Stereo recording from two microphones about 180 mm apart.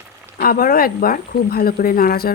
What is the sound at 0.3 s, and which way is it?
A woman's voice, 55° left (ahead or behind).